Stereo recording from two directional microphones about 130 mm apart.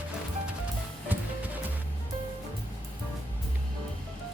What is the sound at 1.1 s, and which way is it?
Music, 15° right (ahead or behind).